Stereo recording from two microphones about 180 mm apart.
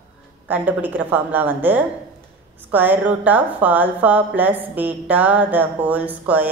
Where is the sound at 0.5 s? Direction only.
10° right (ahead or behind).